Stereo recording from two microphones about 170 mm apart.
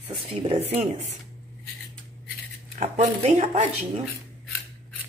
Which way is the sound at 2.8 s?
40° right (ahead or behind).